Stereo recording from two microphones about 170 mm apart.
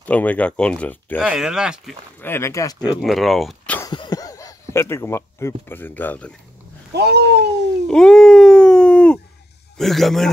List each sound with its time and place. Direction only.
0.0 s speech: 10° left (ahead or behind)
1.2 s speech: 5° right (ahead or behind)
2.1 s speech: 15° left (ahead or behind)
2.9 s speech: centre (ahead or behind)
3.9 s speech: 25° left (ahead or behind); by 6.3 s 10° left (ahead or behind)
6.9 s speech: 75° right (ahead or behind)
7.9 s speech: 5° left (ahead or behind)